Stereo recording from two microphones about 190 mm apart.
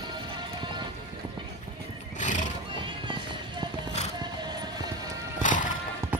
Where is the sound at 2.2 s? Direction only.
40° left (ahead or behind).